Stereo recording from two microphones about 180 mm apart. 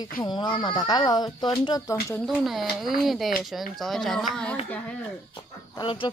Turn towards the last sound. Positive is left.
turn(degrees=25)  # may be behind; listen again after turning